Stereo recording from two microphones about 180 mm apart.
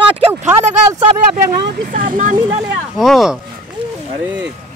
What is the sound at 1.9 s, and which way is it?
Speech, 45° right (ahead or behind).